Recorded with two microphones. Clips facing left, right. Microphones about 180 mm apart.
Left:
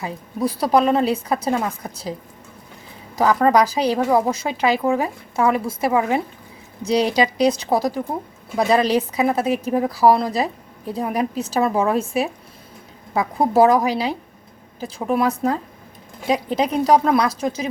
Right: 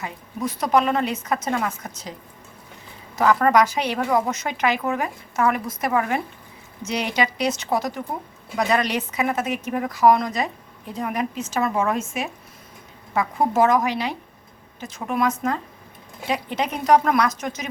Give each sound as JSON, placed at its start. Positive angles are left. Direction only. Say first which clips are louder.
{"t": 0.0, "sound": "a woman's voice", "louder": "left 5 dB", "side_deg": 35}
{"t": 3.2, "sound": "a woman's voice", "louder": "left 2 dB", "side_deg": 35}
{"t": 6.8, "sound": "a woman's voice", "louder": "left 6 dB", "side_deg": 35}